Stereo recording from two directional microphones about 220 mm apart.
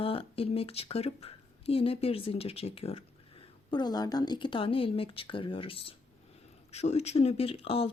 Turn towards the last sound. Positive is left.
turn(degrees=25)  # may be behind; listen again after turning